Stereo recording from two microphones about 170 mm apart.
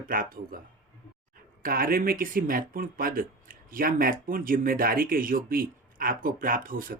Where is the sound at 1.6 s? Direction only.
60° right (ahead or behind).